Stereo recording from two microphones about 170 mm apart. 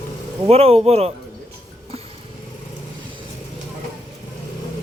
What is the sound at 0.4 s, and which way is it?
Speech, 40° right (ahead or behind).